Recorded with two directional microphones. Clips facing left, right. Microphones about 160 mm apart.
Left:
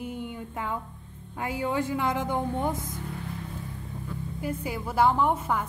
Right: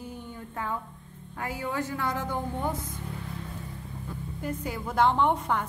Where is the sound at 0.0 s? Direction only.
15° left (ahead or behind).